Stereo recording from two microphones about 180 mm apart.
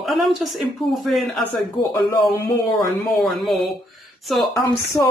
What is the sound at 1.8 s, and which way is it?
Speech, 25° left (ahead or behind).